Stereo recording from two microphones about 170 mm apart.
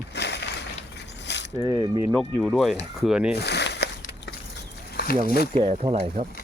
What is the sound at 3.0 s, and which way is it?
Speech, 5° right (ahead or behind).